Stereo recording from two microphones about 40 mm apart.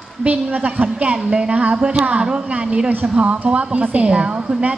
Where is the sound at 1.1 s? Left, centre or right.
Centre.